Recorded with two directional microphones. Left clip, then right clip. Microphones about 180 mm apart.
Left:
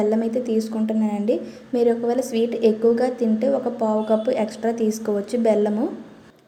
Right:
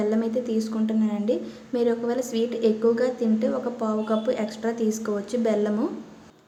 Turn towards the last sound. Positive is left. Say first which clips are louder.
# left 5 dB
turn(degrees=10)  # may be behind; listen again after turning